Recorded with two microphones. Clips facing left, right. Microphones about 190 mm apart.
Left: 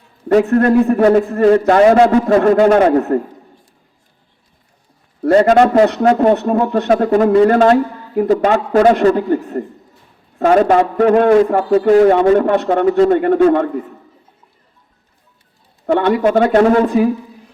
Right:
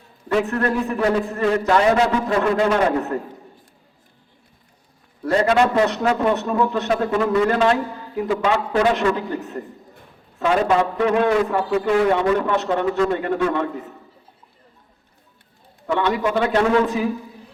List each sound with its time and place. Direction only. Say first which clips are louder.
0.3 s a man's voice: left 9 dB; 40° left (ahead or behind)
5.2 s a man's voice: left 7 dB; 50° left (ahead or behind)
12.5 s a man's voice: left 7 dB; 55° left (ahead or behind)
15.9 s a man's voice: left 7 dB; 55° left (ahead or behind)